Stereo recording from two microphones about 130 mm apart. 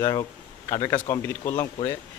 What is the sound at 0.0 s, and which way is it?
Speech, 25° left (ahead or behind).